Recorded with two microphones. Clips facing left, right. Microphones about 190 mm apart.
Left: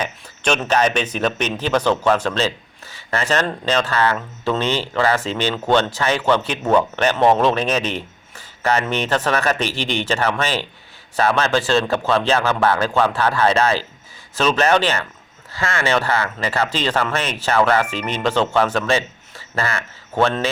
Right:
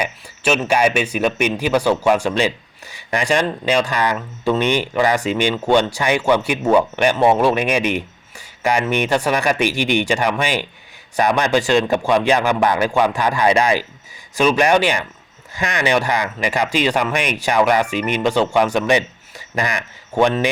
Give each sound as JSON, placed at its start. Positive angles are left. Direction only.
{"t": 0.0, "sound": "speech", "side_deg": -5}